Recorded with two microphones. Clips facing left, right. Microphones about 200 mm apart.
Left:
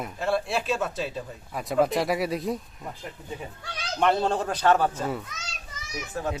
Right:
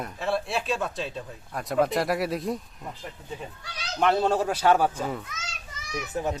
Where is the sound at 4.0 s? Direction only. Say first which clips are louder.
Right 1 dB; centre (ahead or behind).